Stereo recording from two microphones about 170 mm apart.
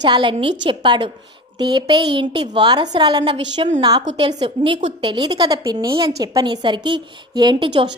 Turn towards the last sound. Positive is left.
turn(degrees=-30)  # may be behind; listen again after turning